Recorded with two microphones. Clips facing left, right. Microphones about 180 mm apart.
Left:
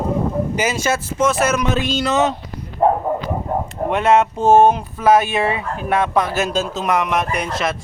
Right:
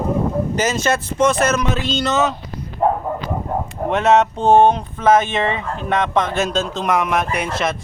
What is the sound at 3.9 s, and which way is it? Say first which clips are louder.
Speech: right 1 dB; 5° left (ahead or behind).